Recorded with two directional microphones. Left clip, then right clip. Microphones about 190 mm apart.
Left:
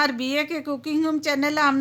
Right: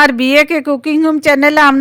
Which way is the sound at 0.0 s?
40° right (ahead or behind).